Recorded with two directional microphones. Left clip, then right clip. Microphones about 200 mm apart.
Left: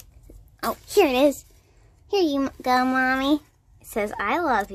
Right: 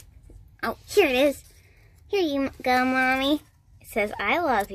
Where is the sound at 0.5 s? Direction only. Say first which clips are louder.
Left 2 dB; 10° left (ahead or behind).